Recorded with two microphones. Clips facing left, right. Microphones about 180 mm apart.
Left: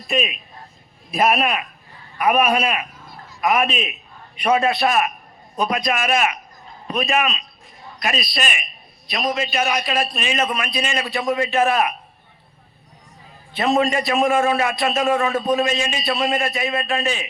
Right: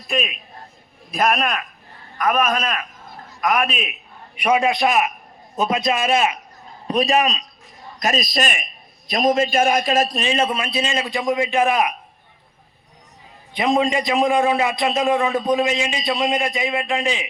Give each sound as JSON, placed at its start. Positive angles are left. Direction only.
{"t": 0.1, "sound": "a man's voice", "side_deg": 0}
{"t": 13.5, "sound": "a man's voice", "side_deg": -15}